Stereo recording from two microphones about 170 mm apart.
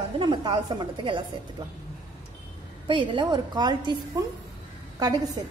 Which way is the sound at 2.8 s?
30° right (ahead or behind).